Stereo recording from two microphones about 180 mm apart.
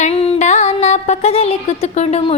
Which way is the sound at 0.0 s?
35° left (ahead or behind).